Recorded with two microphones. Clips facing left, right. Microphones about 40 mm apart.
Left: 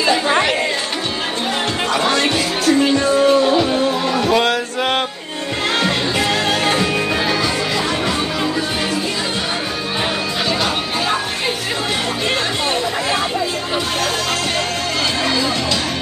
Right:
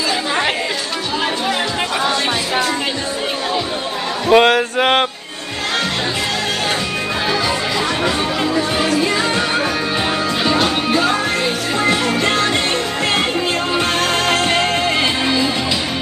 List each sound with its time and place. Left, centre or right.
4.3 s music: right